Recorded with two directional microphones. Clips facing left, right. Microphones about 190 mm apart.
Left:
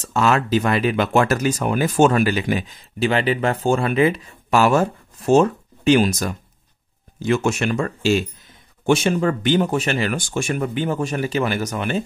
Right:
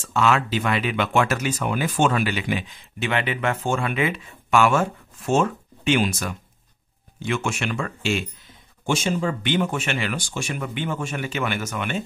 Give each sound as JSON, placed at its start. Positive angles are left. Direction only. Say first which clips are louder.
{"t": 0.0, "sound": "speech", "louder": "left 2 dB", "side_deg": 40}
{"t": 8.8, "sound": "speech", "louder": "left 6 dB", "side_deg": 60}
{"t": 9.4, "sound": "speech", "louder": "left 5 dB", "side_deg": 40}